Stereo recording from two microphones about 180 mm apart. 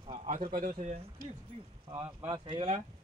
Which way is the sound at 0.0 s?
30° right (ahead or behind).